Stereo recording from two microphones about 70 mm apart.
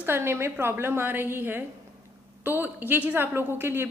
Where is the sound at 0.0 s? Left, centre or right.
Right.